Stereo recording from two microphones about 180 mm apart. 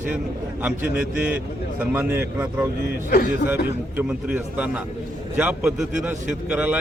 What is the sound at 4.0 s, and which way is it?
A man's voice, 10° right (ahead or behind).